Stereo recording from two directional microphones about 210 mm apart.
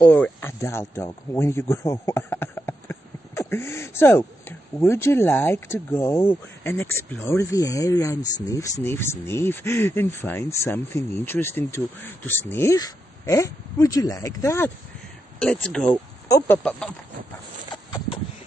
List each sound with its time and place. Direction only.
0.1 s speech: 10° left (ahead or behind)
15.9 s speech: 15° left (ahead or behind)